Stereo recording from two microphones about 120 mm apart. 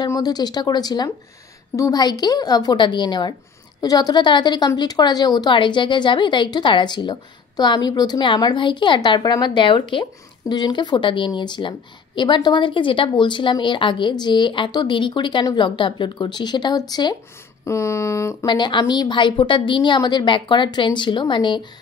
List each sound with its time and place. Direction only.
0.0 s speech: 35° left (ahead or behind)
18.5 s speech: 40° left (ahead or behind)